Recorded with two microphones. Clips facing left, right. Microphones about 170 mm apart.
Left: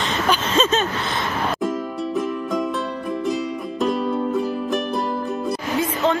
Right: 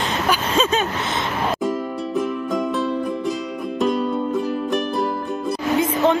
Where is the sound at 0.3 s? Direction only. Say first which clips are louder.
Left 1 dB; 10° right (ahead or behind).